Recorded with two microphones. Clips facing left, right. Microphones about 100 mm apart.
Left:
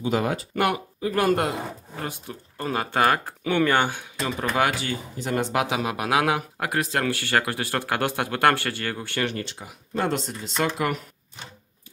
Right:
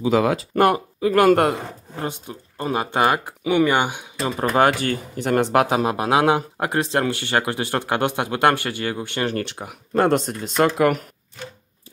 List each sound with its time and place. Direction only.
0.2 s speech: 90° right
0.6 s speech: 40° right (ahead or behind)
1.0 s speech: 85° right
2.0 s speech: 20° right (ahead or behind)
4.7 s speech: 50° right (ahead or behind); by 9.2 s 20° right (ahead or behind)
9.4 s speech: 60° right (ahead or behind)